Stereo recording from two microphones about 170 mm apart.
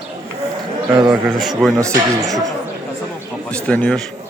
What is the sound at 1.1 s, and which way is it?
A man's voice, centre (ahead or behind).